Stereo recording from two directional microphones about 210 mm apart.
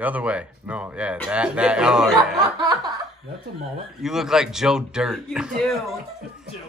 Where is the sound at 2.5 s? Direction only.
20° right (ahead or behind).